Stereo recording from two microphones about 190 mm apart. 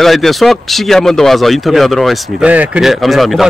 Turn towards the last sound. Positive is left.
turn(degrees=0)  # may be behind; listen again after turning